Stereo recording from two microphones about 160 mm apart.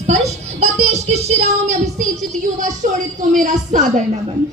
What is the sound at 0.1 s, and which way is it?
Music, 40° right (ahead or behind).